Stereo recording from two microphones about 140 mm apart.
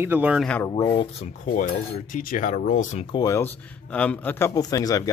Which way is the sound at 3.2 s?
20° left (ahead or behind).